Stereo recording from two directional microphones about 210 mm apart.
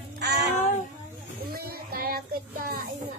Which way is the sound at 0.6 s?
35° left (ahead or behind).